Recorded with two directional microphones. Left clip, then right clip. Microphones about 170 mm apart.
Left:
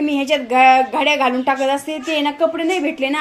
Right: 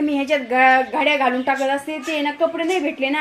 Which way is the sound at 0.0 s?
10° left (ahead or behind).